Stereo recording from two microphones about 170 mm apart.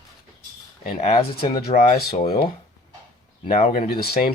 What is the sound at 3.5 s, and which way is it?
Speech, 55° left (ahead or behind).